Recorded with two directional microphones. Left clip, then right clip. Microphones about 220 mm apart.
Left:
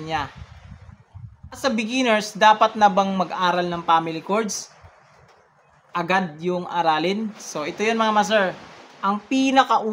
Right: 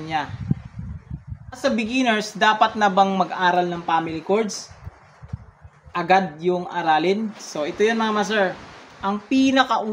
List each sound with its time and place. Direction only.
0.0 s speech: 20° left (ahead or behind)
1.5 s speech: 20° left (ahead or behind)
5.9 s speech: 15° left (ahead or behind)